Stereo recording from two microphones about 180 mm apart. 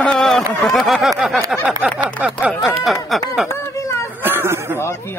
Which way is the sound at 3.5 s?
15° left (ahead or behind).